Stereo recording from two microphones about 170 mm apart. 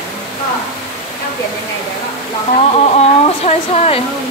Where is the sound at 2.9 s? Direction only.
35° left (ahead or behind).